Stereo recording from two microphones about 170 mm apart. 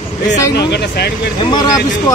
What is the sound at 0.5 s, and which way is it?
Speech, 75° left (ahead or behind).